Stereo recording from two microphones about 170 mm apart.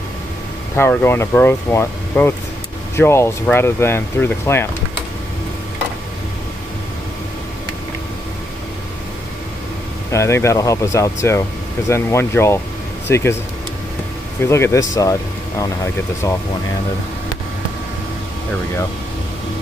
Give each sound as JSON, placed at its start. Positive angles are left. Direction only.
{"t": 0.7, "sound": "speech", "side_deg": 15}
{"t": 10.1, "sound": "speech", "side_deg": 15}
{"t": 14.4, "sound": "speech", "side_deg": 15}
{"t": 16.2, "sound": "speech", "side_deg": 20}